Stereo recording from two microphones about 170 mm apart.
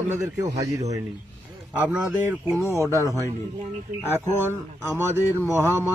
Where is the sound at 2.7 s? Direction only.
20° right (ahead or behind).